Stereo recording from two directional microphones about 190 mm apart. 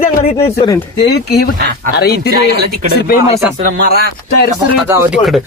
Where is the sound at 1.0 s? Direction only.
55° left (ahead or behind).